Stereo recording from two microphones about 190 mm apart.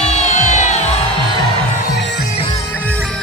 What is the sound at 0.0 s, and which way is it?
Music, 35° left (ahead or behind).